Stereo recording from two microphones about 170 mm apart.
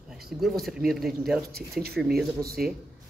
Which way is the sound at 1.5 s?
65° right (ahead or behind).